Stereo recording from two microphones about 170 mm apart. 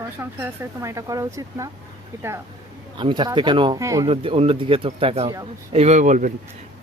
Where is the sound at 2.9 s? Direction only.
25° right (ahead or behind).